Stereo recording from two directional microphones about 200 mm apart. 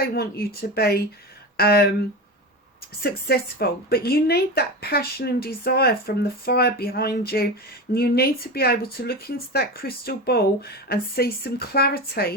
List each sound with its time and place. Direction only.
0.0 s speech: 50° left (ahead or behind)
3.0 s speech: 50° left (ahead or behind)